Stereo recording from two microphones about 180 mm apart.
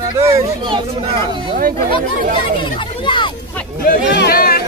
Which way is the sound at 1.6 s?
55° right (ahead or behind).